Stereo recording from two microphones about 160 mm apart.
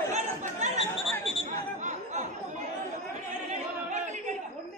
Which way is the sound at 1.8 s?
50° right (ahead or behind).